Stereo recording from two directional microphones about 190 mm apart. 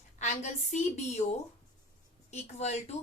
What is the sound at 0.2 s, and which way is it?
Speech, 40° left (ahead or behind).